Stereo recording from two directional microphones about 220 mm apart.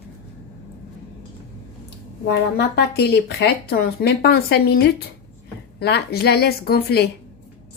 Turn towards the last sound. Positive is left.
turn(degrees=45)  # may be behind; listen again after turning